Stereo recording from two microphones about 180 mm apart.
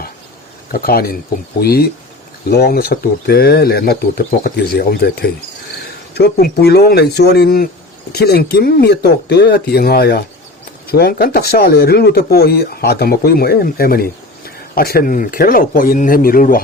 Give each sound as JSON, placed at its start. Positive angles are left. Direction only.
{"t": 0.7, "sound": "speech", "side_deg": 55}